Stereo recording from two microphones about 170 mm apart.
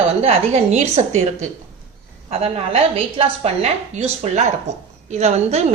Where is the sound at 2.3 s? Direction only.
35° right (ahead or behind).